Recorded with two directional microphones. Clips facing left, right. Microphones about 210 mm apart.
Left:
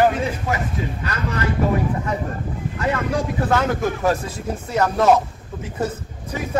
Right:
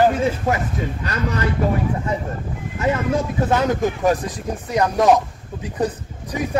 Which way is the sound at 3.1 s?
20° right (ahead or behind).